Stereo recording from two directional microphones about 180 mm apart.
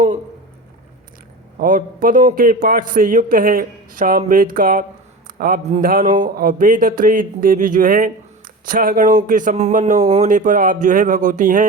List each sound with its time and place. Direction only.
1.5 s speech: 50° right (ahead or behind)